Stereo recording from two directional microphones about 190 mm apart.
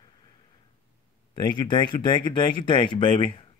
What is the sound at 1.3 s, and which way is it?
Speech, 25° left (ahead or behind).